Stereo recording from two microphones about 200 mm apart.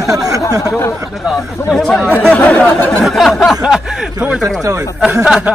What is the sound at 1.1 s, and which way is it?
A man's voice, centre (ahead or behind).